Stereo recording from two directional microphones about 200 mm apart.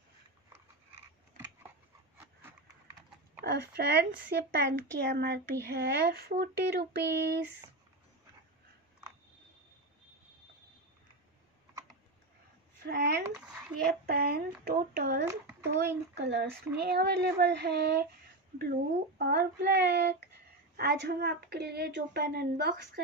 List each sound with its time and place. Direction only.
3.4 s speech: 55° right (ahead or behind)
12.8 s a sound: 55° right (ahead or behind)
13.8 s speech: 50° right (ahead or behind)
15.2 s a child's voice: 10° right (ahead or behind)
16.2 s speech: 55° right (ahead or behind)